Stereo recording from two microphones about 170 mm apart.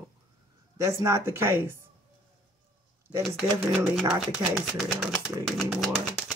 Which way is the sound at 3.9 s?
5° right (ahead or behind).